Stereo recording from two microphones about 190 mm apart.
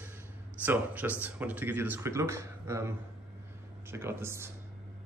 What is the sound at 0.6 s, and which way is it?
Speech, 10° right (ahead or behind).